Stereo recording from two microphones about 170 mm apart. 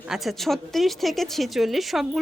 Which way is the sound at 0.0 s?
Centre (ahead or behind).